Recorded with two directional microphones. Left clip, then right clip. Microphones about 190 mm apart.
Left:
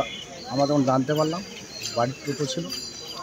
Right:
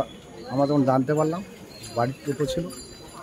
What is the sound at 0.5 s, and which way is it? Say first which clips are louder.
Speech: even; 15° right (ahead or behind).